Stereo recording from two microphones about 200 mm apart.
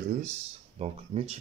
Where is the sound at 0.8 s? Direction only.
30° right (ahead or behind).